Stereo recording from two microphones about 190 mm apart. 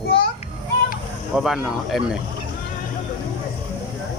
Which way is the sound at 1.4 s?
Centre (ahead or behind).